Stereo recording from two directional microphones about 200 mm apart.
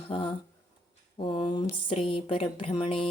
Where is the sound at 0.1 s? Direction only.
25° left (ahead or behind).